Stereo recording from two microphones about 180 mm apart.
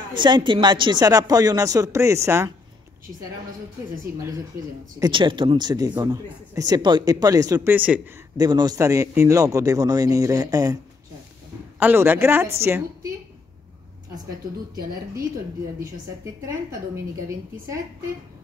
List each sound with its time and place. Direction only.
0.1 s speech: 25° right (ahead or behind)
4.9 s speech: 25° right (ahead or behind)
8.4 s speech: 20° right (ahead or behind)
11.8 s speech: 10° right (ahead or behind)